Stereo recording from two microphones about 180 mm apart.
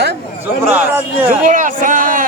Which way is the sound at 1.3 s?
50° right (ahead or behind).